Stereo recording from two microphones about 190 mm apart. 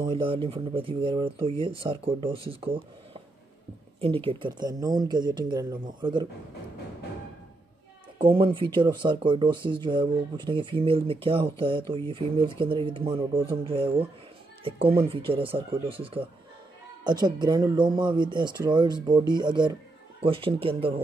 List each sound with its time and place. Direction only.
0.0 s speech: 25° right (ahead or behind)
8.4 s speech: 25° right (ahead or behind)